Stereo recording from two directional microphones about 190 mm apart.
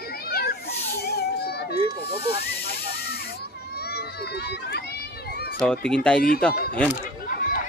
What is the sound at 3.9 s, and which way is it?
Speech, 60° left (ahead or behind).